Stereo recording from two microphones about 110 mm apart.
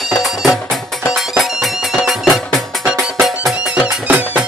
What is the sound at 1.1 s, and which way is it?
Music, centre (ahead or behind).